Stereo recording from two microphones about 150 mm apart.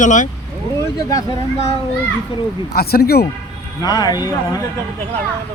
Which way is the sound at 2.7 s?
90° left.